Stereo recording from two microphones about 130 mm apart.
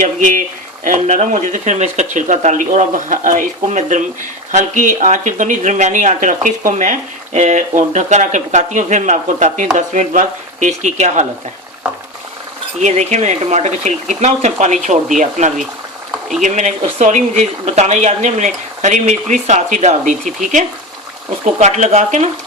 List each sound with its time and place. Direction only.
0.0 s speech: 90° right
0.9 s speech: 75° right (ahead or behind)
6.7 s speech: 75° right (ahead or behind); by 11.3 s 60° right (ahead or behind)
12.8 s speech: 65° right (ahead or behind)
21.6 s speech: 65° right (ahead or behind)